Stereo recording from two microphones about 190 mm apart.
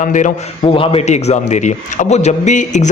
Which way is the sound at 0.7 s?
30° left (ahead or behind).